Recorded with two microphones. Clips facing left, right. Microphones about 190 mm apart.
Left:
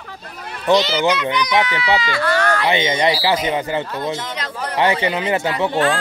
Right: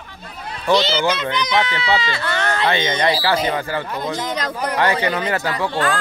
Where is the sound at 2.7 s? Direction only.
20° left (ahead or behind).